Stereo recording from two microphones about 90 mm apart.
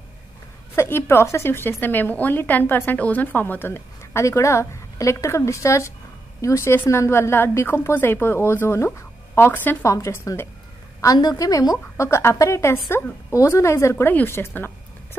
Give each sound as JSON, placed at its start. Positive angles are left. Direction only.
{"t": 0.7, "sound": "a woman's voice", "side_deg": 25}
{"t": 9.8, "sound": "a woman's voice", "side_deg": 35}
{"t": 11.0, "sound": "a woman's voice", "side_deg": 45}